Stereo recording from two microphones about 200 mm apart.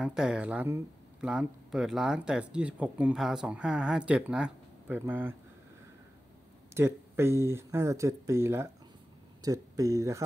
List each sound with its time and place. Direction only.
0.0 s speech: 5° right (ahead or behind)
6.7 s speech: 10° right (ahead or behind)